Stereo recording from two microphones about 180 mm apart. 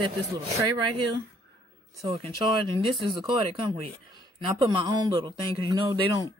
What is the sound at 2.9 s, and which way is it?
A man's voice, 30° right (ahead or behind).